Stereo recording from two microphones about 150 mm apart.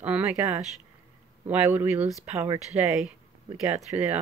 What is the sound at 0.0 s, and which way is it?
Speech, 10° right (ahead or behind).